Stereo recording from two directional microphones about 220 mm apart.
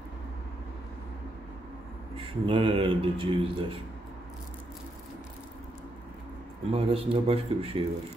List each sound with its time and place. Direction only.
2.1 s speech: 25° right (ahead or behind)
6.7 s speech: 25° right (ahead or behind)